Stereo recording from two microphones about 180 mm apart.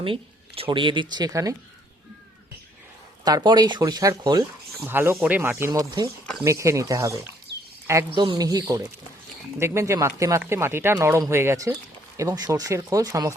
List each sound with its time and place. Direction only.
0.0 s speech: 30° right (ahead or behind)
3.2 s speech: 20° right (ahead or behind)
4.8 s speech: 10° right (ahead or behind)